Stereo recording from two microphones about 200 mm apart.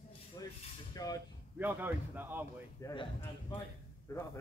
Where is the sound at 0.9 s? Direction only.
20° left (ahead or behind).